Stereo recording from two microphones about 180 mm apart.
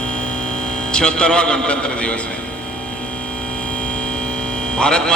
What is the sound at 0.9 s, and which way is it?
A man's voice, 5° left (ahead or behind).